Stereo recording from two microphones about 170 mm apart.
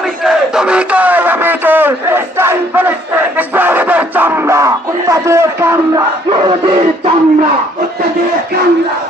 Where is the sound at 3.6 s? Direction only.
10° right (ahead or behind).